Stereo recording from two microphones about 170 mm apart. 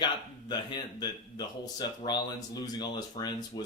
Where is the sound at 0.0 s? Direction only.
25° left (ahead or behind).